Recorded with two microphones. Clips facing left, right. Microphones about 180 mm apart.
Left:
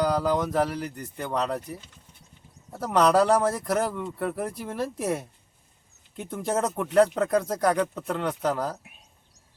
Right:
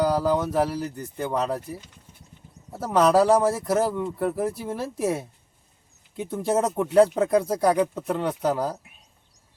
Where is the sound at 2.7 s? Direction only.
5° right (ahead or behind).